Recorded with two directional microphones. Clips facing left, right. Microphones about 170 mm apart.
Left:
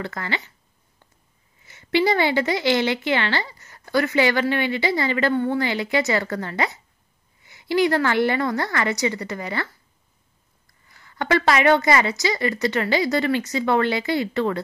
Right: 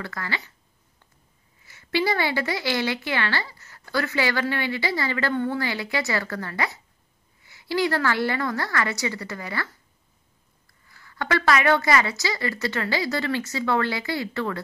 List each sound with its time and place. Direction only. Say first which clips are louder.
0.0 s a woman's voice: left 4 dB; 25° left (ahead or behind)
1.7 s a woman's voice: left 4 dB; 20° left (ahead or behind)
10.9 s a woman's voice: left 4 dB; 20° left (ahead or behind)